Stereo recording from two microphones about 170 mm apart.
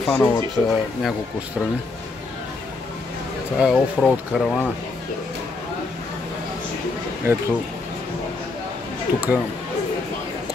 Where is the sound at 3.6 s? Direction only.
Centre (ahead or behind).